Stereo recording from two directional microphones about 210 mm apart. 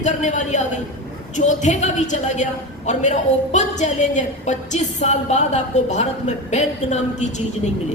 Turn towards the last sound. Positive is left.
turn(degrees=35)  # may be behind; listen again after turning